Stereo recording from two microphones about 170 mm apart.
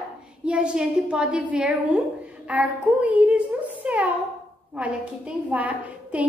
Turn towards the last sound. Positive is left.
turn(degrees=-10)  # may be behind; listen again after turning